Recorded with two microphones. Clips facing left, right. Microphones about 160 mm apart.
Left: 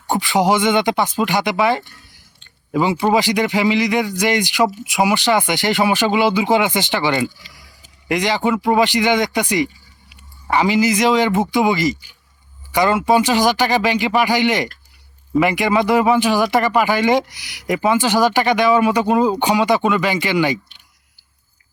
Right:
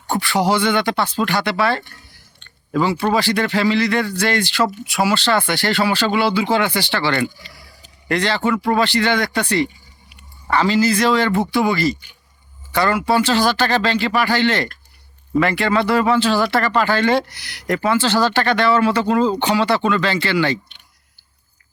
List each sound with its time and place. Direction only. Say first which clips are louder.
0.1 s speech: left 2 dB; 15° left (ahead or behind)